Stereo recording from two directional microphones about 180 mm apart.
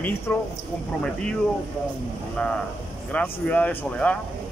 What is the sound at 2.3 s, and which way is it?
Speech, 5° left (ahead or behind).